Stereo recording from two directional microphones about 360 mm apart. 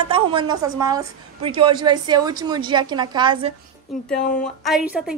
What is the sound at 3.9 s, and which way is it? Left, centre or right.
A woman's voice, centre.